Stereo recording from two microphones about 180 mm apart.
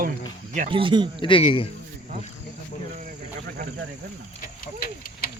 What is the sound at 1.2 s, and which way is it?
Speech, 30° left (ahead or behind).